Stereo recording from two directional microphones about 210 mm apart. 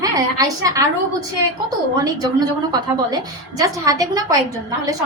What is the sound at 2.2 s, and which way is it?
A woman's voice, 20° right (ahead or behind).